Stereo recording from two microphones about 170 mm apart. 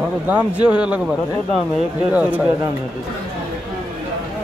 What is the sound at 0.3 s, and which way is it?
Speech, 10° right (ahead or behind).